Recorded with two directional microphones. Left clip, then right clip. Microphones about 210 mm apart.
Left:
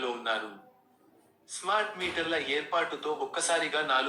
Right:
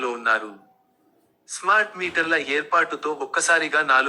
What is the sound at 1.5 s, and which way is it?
A man's voice, 25° right (ahead or behind).